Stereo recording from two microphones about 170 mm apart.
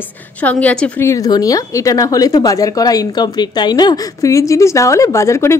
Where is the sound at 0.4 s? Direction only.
10° left (ahead or behind).